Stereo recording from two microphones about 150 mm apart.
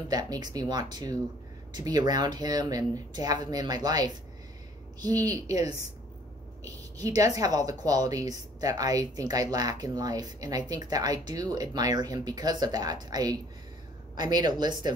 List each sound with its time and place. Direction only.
0.1 s a woman's voice: 25° right (ahead or behind)
7.0 s a woman's voice: 25° right (ahead or behind)